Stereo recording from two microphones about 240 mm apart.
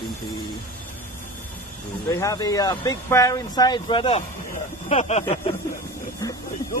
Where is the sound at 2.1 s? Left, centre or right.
Centre.